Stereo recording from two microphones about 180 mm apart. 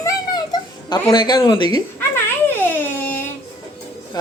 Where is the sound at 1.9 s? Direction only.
10° left (ahead or behind).